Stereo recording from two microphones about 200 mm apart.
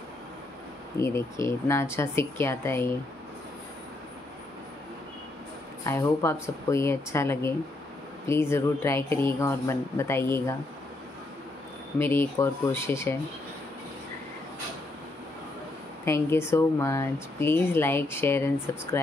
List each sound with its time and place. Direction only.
0.9 s speech: 15° left (ahead or behind)
5.9 s speech: 15° left (ahead or behind)
12.0 s speech: 10° left (ahead or behind)
16.1 s speech: 15° left (ahead or behind)